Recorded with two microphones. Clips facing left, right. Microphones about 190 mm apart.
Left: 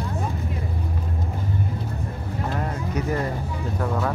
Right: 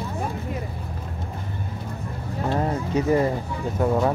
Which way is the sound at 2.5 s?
30° right (ahead or behind).